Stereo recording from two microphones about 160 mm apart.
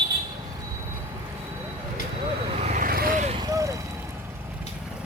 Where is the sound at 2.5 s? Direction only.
50° right (ahead or behind); by 3.2 s 65° right (ahead or behind).